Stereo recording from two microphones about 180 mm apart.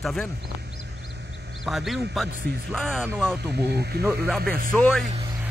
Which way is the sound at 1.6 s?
Centre (ahead or behind).